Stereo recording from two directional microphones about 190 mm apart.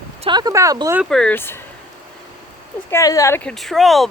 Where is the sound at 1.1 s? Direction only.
5° left (ahead or behind).